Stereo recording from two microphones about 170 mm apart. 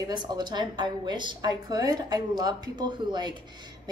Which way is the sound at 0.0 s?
25° right (ahead or behind).